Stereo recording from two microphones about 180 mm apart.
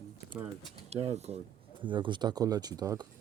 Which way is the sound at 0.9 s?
35° right (ahead or behind).